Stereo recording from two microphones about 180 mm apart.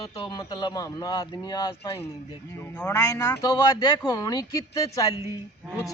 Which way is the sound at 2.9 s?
20° left (ahead or behind).